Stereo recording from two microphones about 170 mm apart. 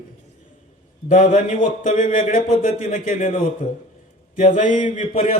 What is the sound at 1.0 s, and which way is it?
A man's voice, 50° left (ahead or behind).